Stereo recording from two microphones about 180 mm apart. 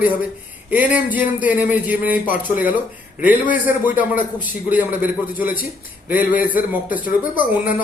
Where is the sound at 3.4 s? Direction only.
50° left (ahead or behind).